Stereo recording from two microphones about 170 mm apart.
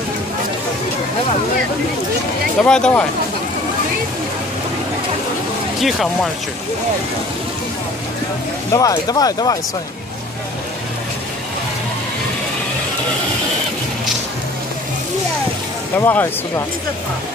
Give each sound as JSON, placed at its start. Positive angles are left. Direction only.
{"t": 2.6, "sound": "speech", "side_deg": 5}
{"t": 5.8, "sound": "speech", "side_deg": 0}
{"t": 8.7, "sound": "speech", "side_deg": 20}
{"t": 16.0, "sound": "speech", "side_deg": 15}